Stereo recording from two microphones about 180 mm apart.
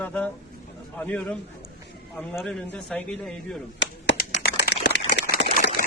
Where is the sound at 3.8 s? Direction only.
70° left (ahead or behind).